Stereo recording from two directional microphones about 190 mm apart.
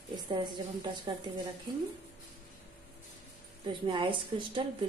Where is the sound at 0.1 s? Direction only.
25° right (ahead or behind).